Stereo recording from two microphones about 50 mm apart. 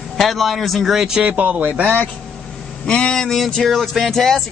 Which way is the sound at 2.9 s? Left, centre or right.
Centre.